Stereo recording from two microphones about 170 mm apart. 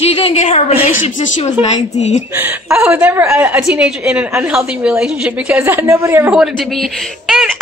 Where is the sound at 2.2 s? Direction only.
10° right (ahead or behind).